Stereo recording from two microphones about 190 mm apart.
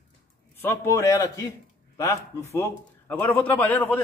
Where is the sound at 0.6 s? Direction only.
15° left (ahead or behind).